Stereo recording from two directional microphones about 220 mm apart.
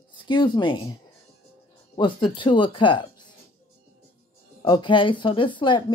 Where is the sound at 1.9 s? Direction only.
25° left (ahead or behind).